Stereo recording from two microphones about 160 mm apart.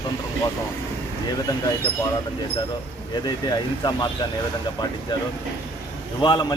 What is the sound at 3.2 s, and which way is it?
Speech, 25° left (ahead or behind).